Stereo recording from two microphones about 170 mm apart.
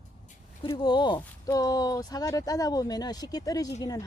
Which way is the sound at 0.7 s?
25° left (ahead or behind).